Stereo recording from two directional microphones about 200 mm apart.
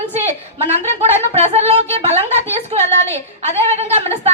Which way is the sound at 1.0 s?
30° right (ahead or behind).